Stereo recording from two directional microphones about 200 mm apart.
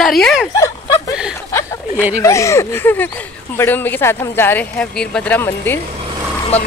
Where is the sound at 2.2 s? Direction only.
15° left (ahead or behind).